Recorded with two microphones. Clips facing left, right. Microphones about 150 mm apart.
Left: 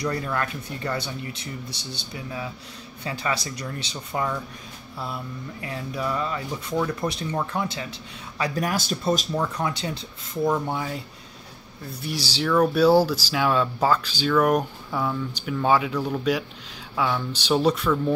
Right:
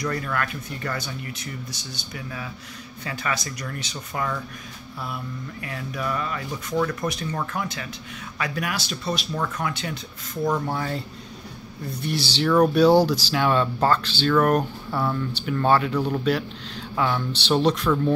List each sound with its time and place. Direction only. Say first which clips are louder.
0.0 s speech: even; 25° left (ahead or behind)
6.7 s speech: right 1 dB; 10° left (ahead or behind)
7.0 s speech: left 1 dB; 30° left (ahead or behind)
8.4 s speech: left 3 dB; 40° left (ahead or behind)
9.6 s speech: left 1 dB; 30° left (ahead or behind)
10.7 s speech: right 1 dB; 10° left (ahead or behind)
12.0 s speech: right 3 dB; 10° left (ahead or behind)
12.4 s speech: right 2 dB; 5° right (ahead or behind)
12.7 s speech: right 1 dB; 5° left (ahead or behind)
14.6 s speech: right 1 dB; 10° right (ahead or behind)
15.1 s speech: right 2 dB; 5° left (ahead or behind)